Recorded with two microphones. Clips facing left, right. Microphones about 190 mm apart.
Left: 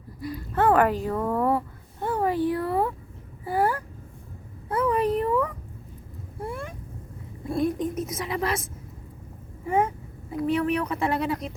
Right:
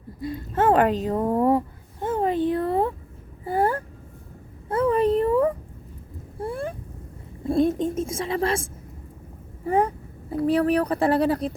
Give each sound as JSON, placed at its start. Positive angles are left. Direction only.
{"t": 0.2, "sound": "a child's voice", "side_deg": -25}
{"t": 1.4, "sound": "a sound", "side_deg": -15}
{"t": 7.4, "sound": "a woman's voice", "side_deg": -30}